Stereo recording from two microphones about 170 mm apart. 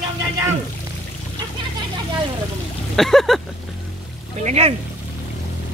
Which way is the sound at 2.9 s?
Centre (ahead or behind).